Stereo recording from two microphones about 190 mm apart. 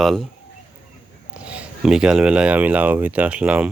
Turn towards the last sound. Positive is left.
turn(degrees=-5)  # may be behind; listen again after turning